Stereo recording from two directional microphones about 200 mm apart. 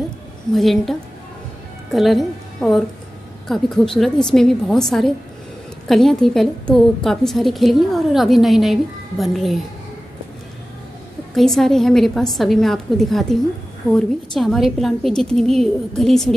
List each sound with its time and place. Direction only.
0.5 s a woman's voice: centre (ahead or behind)
11.3 s a woman's voice: centre (ahead or behind)